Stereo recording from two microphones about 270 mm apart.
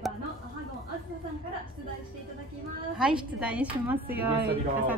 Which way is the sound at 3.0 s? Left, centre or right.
Centre.